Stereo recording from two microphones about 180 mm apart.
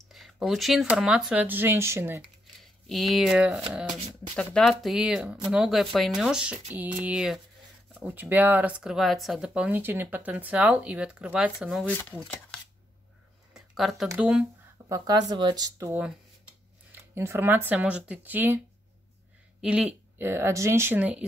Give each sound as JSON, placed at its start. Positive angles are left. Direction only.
{"t": 0.1, "sound": "speech", "side_deg": 0}
{"t": 2.4, "sound": "a sound", "side_deg": 0}
{"t": 3.7, "sound": "speech", "side_deg": 0}
{"t": 13.5, "sound": "a sound", "side_deg": 0}
{"t": 14.0, "sound": "speech", "side_deg": -10}
{"t": 14.9, "sound": "speech", "side_deg": -20}
{"t": 19.6, "sound": "speech", "side_deg": -5}